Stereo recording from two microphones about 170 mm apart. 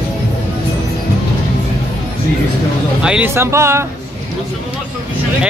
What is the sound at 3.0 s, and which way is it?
Speech, 10° right (ahead or behind).